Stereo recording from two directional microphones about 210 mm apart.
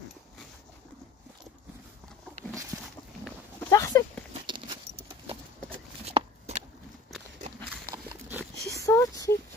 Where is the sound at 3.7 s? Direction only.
15° left (ahead or behind).